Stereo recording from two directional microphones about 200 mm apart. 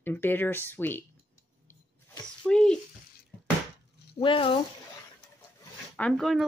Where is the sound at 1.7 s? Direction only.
10° left (ahead or behind).